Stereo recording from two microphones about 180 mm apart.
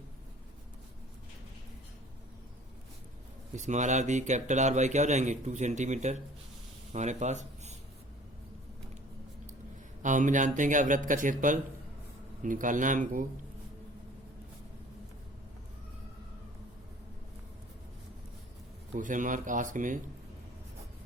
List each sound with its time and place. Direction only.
3.5 s speech: 40° right (ahead or behind)
10.0 s speech: 45° right (ahead or behind)
18.9 s speech: 45° right (ahead or behind)